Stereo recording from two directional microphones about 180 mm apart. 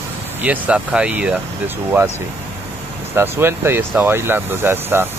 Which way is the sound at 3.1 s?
15° right (ahead or behind).